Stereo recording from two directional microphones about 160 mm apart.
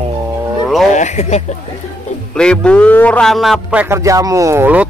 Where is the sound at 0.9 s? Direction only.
50° left (ahead or behind).